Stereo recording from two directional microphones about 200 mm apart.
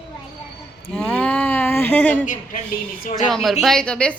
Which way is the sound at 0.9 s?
5° left (ahead or behind).